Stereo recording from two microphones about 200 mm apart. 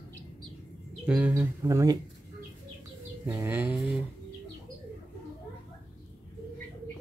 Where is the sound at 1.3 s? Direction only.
15° right (ahead or behind).